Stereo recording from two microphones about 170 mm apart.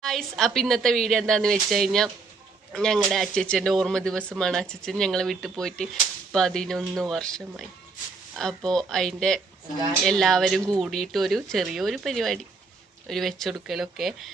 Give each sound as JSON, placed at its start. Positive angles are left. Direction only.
{"t": 0.0, "sound": "speech", "side_deg": 0}